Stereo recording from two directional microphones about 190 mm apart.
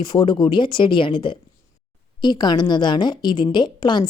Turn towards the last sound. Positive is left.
turn(degrees=25)  # may be behind; listen again after turning